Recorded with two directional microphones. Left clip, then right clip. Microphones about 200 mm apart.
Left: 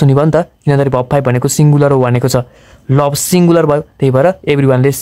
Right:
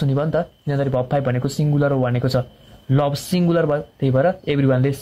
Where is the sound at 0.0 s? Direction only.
40° left (ahead or behind).